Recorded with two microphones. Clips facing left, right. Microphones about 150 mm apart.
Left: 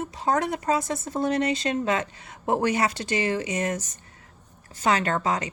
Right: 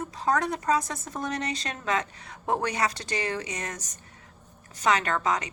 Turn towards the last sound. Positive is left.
turn(degrees=30)  # may be behind; listen again after turning